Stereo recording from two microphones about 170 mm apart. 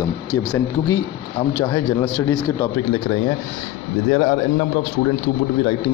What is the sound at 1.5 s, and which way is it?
A man's voice, 20° left (ahead or behind).